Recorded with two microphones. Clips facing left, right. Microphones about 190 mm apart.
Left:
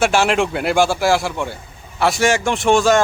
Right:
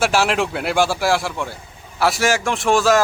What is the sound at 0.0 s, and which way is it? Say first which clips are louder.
Speech: left 2 dB; centre (ahead or behind).